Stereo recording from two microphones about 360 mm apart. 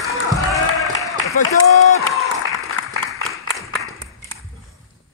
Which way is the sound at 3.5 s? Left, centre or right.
Centre.